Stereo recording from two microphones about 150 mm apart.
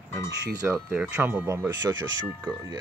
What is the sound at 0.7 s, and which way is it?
Speech, 5° right (ahead or behind).